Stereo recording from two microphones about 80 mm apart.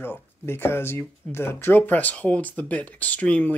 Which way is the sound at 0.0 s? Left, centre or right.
Left.